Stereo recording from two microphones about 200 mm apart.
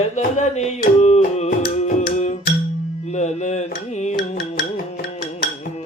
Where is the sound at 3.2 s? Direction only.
35° left (ahead or behind).